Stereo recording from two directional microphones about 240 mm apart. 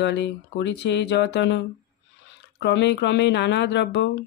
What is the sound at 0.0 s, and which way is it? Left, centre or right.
Speech, left.